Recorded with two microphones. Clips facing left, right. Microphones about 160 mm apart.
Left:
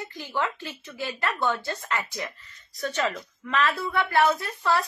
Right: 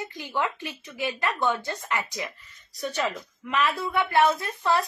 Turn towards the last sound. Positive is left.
turn(degrees=-20)  # may be behind; listen again after turning